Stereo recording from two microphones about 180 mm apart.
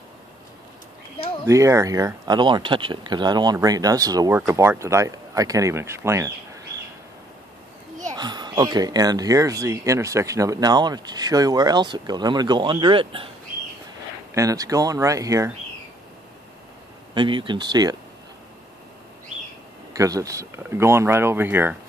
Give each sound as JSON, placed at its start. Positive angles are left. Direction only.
{"t": 1.4, "sound": "speech", "side_deg": -15}
{"t": 8.1, "sound": "speech", "side_deg": -25}
{"t": 14.3, "sound": "speech", "side_deg": -20}
{"t": 17.1, "sound": "speech", "side_deg": -25}
{"t": 19.9, "sound": "speech", "side_deg": -20}